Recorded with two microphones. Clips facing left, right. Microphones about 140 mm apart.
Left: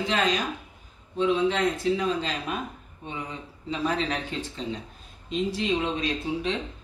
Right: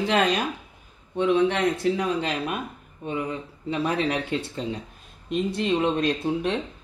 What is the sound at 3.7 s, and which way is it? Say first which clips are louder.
Speech: right 2 dB; 55° right (ahead or behind).